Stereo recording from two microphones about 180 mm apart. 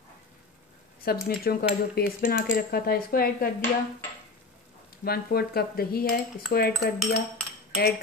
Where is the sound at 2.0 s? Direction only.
60° left (ahead or behind).